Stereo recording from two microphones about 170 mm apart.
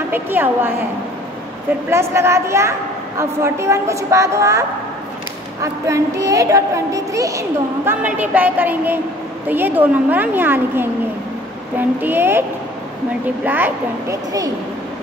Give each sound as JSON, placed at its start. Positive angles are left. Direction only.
{"t": 0.1, "sound": "a woman's voice", "side_deg": -10}
{"t": 1.9, "sound": "a woman's voice", "side_deg": -15}
{"t": 12.0, "sound": "a woman's voice", "side_deg": -10}